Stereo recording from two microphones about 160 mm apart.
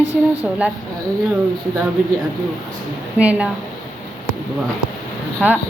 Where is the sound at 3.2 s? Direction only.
10° right (ahead or behind).